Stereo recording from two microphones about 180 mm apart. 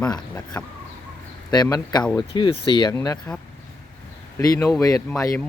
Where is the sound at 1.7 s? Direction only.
20° left (ahead or behind).